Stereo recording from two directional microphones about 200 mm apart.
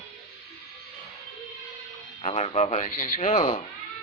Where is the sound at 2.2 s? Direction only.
30° left (ahead or behind).